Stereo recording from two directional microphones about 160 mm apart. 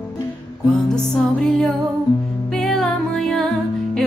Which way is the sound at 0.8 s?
5° left (ahead or behind).